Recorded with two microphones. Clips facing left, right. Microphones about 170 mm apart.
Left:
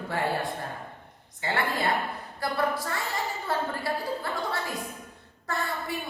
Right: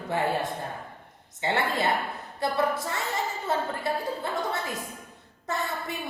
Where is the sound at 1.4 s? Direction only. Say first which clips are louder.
Right 2 dB; 25° right (ahead or behind).